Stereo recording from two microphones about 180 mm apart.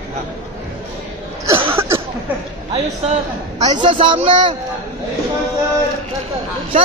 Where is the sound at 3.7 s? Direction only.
25° right (ahead or behind).